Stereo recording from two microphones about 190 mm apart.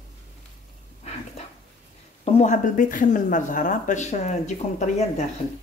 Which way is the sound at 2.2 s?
35° left (ahead or behind).